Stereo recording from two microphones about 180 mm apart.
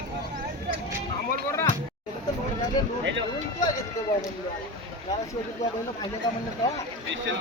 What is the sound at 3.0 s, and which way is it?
Speech, 85° right.